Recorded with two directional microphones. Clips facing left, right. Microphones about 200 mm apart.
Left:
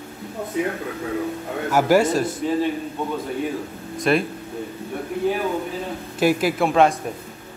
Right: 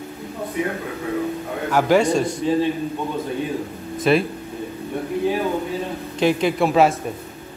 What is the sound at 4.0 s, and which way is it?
Speech, centre (ahead or behind).